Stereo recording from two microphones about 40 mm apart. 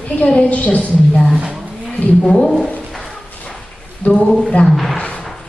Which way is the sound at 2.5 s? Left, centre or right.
Centre.